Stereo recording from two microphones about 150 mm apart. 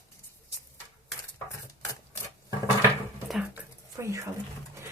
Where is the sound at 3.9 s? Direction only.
20° right (ahead or behind).